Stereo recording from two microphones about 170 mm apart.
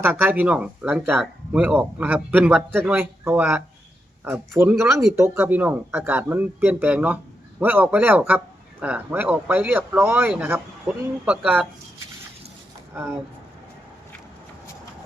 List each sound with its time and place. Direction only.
0.0 s speech: 10° right (ahead or behind)
10.9 s speech: centre (ahead or behind)